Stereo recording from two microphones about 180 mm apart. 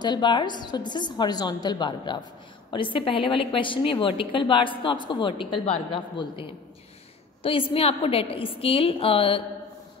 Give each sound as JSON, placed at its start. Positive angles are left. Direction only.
{"t": 0.0, "sound": "a woman's voice", "side_deg": 25}
{"t": 7.7, "sound": "a woman's voice", "side_deg": 30}